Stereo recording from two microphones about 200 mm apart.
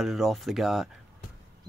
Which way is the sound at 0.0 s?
Centre (ahead or behind).